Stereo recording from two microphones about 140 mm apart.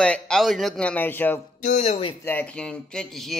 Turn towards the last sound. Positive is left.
turn(degrees=0)  # may be behind; listen again after turning